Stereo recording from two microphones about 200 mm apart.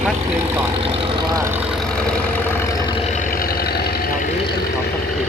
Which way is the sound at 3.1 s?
45° left (ahead or behind).